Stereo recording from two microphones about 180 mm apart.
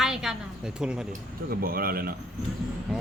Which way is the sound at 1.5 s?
55° right (ahead or behind).